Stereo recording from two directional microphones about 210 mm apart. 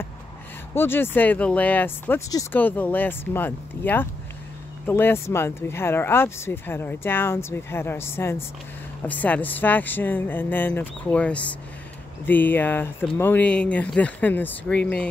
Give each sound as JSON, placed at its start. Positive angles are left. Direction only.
{"t": 0.7, "sound": "speech", "side_deg": 10}